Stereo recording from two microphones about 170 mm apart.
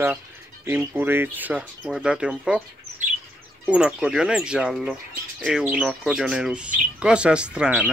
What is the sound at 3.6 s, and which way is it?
Speech, 5° right (ahead or behind).